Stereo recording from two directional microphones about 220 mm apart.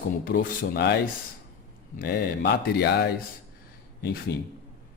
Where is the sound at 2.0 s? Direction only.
45° left (ahead or behind).